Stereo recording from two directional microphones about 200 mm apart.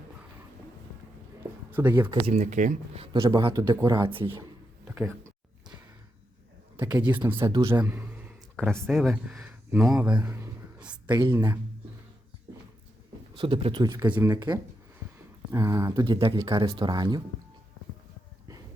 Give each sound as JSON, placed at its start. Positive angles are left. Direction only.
{"t": 1.7, "sound": "speech", "side_deg": -10}
{"t": 2.0, "sound": "speech", "side_deg": -25}
{"t": 4.9, "sound": "a sound", "side_deg": -10}
{"t": 6.7, "sound": "speech", "side_deg": -10}
{"t": 7.4, "sound": "speech", "side_deg": -20}
{"t": 7.7, "sound": "a man's voice", "side_deg": -10}
{"t": 8.5, "sound": "speech", "side_deg": 5}
{"t": 11.1, "sound": "speech", "side_deg": -15}
{"t": 13.3, "sound": "speech", "side_deg": -25}